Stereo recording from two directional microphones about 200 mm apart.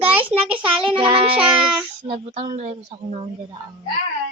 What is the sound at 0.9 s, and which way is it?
Child singing, 25° right (ahead or behind).